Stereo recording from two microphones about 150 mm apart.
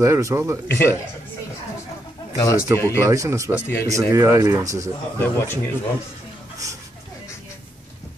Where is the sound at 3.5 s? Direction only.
15° left (ahead or behind).